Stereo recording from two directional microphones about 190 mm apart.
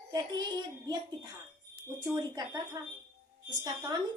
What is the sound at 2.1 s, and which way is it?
A woman's voice, 20° right (ahead or behind).